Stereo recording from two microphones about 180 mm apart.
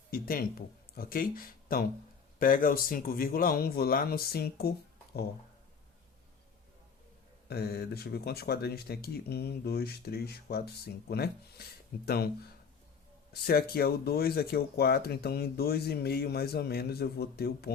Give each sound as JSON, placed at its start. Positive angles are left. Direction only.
{"t": 0.1, "sound": "speech", "side_deg": 55}
{"t": 7.4, "sound": "speech", "side_deg": 60}
{"t": 13.3, "sound": "speech", "side_deg": 60}